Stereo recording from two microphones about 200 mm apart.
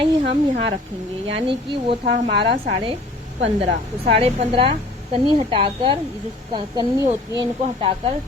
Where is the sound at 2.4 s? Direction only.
25° right (ahead or behind).